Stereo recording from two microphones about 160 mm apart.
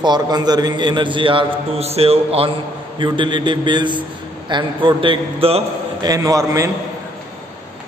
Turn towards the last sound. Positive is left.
turn(degrees=-20)  # may be behind; listen again after turning